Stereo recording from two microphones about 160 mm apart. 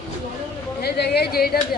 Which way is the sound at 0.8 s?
90° left.